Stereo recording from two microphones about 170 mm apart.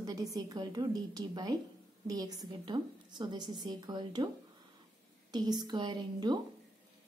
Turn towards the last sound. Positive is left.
turn(degrees=-25)  # may be behind; listen again after turning